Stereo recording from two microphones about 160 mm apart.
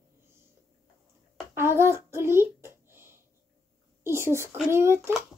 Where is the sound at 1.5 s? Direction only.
15° right (ahead or behind).